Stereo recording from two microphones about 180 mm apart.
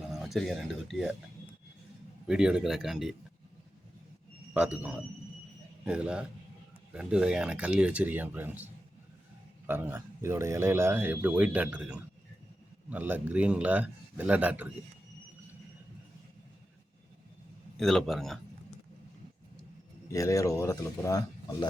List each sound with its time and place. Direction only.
0.1 s speech: centre (ahead or behind)
2.2 s speech: 5° right (ahead or behind)
4.5 s a man's voice: 5° right (ahead or behind)
17.7 s speech: centre (ahead or behind)
20.1 s speech: 15° left (ahead or behind)